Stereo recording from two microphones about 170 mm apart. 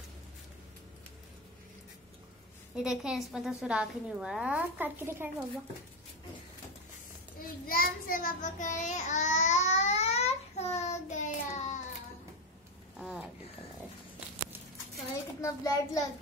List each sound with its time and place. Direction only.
2.7 s a woman's voice: 5° right (ahead or behind)
7.4 s child singing: 60° left (ahead or behind)
12.9 s a sound: 5° right (ahead or behind)
15.4 s a child's voice: 20° left (ahead or behind)